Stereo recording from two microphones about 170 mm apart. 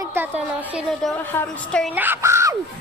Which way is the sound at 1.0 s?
5° left (ahead or behind).